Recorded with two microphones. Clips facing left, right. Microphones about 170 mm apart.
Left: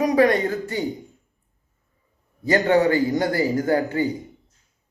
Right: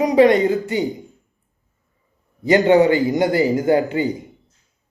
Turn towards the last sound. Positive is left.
turn(degrees=-20)  # may be behind; listen again after turning